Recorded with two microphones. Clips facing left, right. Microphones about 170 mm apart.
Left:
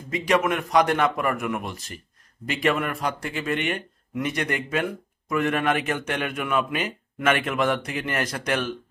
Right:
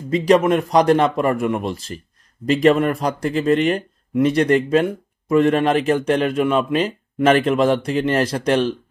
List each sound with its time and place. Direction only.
0.1 s speech: 30° right (ahead or behind)